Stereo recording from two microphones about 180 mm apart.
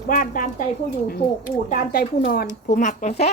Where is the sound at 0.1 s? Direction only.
50° left (ahead or behind).